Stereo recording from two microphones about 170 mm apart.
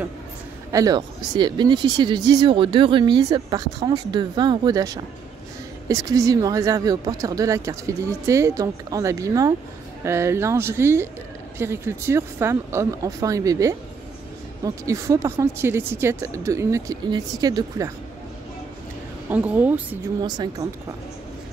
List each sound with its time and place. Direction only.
0.7 s speech: 20° right (ahead or behind)
19.2 s speech: 10° right (ahead or behind)
20.2 s speech: 25° right (ahead or behind)